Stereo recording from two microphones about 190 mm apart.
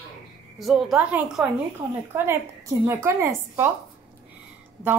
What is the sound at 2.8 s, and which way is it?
Speech, 15° right (ahead or behind).